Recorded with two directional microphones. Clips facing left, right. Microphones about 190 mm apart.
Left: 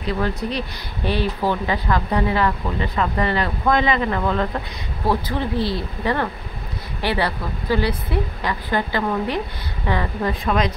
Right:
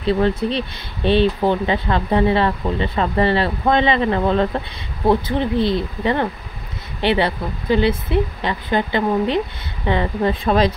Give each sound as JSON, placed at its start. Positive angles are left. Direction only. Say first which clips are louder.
{"t": 0.0, "sound": "speech", "louder": "right 6 dB", "side_deg": -25}